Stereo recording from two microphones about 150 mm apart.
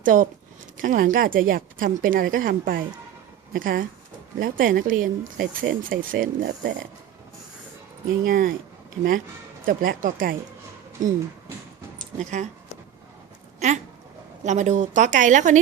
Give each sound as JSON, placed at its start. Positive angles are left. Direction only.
{"t": 0.0, "sound": "speech", "side_deg": -65}
{"t": 8.2, "sound": "speech", "side_deg": -70}
{"t": 9.6, "sound": "speech", "side_deg": -70}
{"t": 12.2, "sound": "speech", "side_deg": -55}
{"t": 13.6, "sound": "a woman's voice", "side_deg": -50}